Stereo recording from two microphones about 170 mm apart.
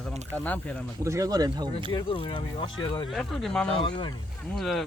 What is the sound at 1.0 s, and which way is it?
Speech, 20° right (ahead or behind).